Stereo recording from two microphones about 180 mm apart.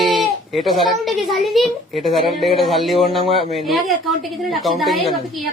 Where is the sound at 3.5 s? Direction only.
Centre (ahead or behind).